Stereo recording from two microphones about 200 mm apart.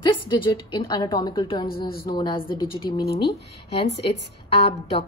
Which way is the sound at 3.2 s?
55° left (ahead or behind).